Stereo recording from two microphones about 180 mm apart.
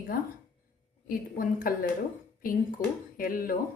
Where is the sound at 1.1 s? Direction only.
50° left (ahead or behind).